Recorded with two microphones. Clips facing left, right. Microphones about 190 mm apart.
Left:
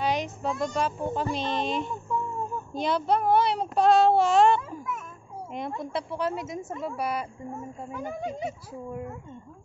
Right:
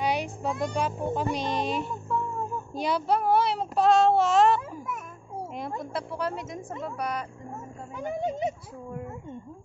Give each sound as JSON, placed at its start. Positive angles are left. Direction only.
{"t": 0.0, "sound": "a child's voice", "side_deg": -10}
{"t": 5.8, "sound": "a child's voice", "side_deg": 0}
{"t": 7.9, "sound": "speech", "side_deg": -20}